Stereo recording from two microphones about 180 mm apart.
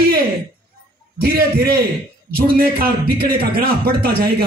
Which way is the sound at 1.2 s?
55° right (ahead or behind).